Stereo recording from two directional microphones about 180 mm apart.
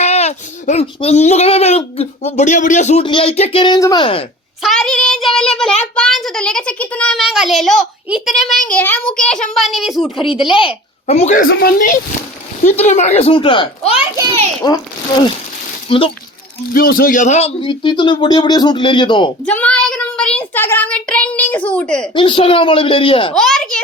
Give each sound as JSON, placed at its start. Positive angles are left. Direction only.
{"t": 0.0, "sound": "speech", "side_deg": 40}
{"t": 4.0, "sound": "speech", "side_deg": 30}
{"t": 4.6, "sound": "a child's voice", "side_deg": 5}
{"t": 10.2, "sound": "speech", "side_deg": 30}
{"t": 11.0, "sound": "speech", "side_deg": 40}
{"t": 12.6, "sound": "speech", "side_deg": 40}
{"t": 15.9, "sound": "speech", "side_deg": 30}
{"t": 16.7, "sound": "a man's voice", "side_deg": 55}
{"t": 17.6, "sound": "speech", "side_deg": 25}
{"t": 19.5, "sound": "child singing", "side_deg": 5}
{"t": 22.1, "sound": "speech", "side_deg": 30}
{"t": 23.3, "sound": "a child's voice", "side_deg": 0}